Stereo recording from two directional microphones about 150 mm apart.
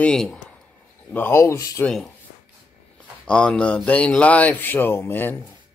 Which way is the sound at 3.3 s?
5° left (ahead or behind).